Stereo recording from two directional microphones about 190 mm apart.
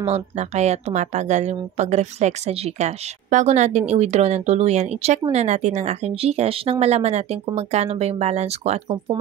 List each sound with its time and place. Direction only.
0.0 s a woman's voice: 35° right (ahead or behind)